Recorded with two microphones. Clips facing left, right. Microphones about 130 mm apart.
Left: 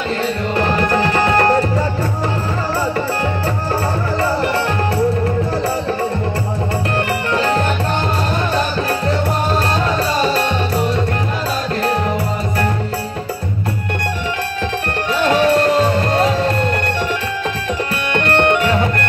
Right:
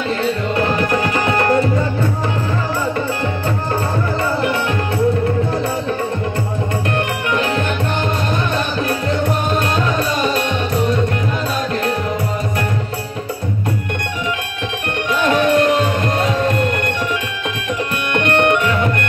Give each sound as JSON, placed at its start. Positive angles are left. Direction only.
{"t": 0.9, "sound": "tabla", "side_deg": 35}
{"t": 7.3, "sound": "music", "side_deg": 35}
{"t": 15.1, "sound": "music", "side_deg": 35}
{"t": 18.2, "sound": "music", "side_deg": 35}